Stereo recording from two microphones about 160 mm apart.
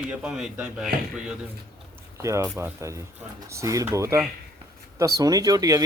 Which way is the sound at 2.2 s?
20° right (ahead or behind).